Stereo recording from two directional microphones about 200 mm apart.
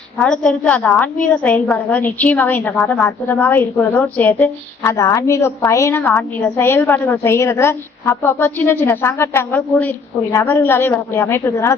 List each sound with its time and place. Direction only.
0.2 s a woman's voice: 5° left (ahead or behind)